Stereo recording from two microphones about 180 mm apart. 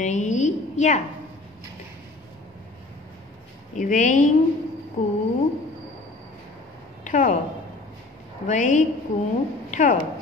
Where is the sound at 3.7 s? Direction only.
45° left (ahead or behind).